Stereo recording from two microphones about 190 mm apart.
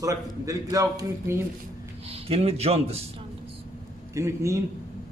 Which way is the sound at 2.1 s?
30° right (ahead or behind).